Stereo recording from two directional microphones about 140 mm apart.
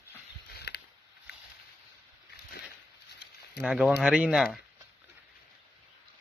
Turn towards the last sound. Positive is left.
turn(degrees=-5)  # may be behind; listen again after turning